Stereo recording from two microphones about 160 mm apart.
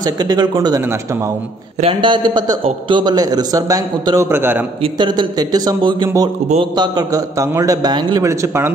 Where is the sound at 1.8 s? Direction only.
35° right (ahead or behind); by 4.6 s 15° right (ahead or behind).